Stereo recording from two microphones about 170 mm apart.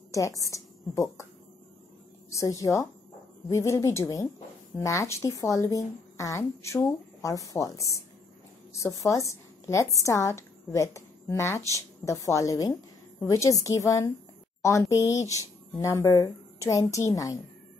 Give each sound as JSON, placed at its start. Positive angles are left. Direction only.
{"t": 0.4, "sound": "a woman's voice", "side_deg": 15}
{"t": 2.3, "sound": "a woman's voice", "side_deg": 20}